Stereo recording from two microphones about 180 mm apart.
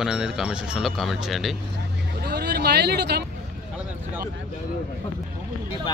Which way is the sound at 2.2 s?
65° right (ahead or behind).